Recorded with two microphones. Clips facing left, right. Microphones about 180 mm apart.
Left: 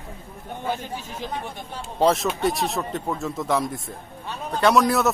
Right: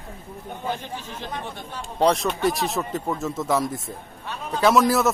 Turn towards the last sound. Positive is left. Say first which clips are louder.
# even
turn(degrees=0)  # may be behind; listen again after turning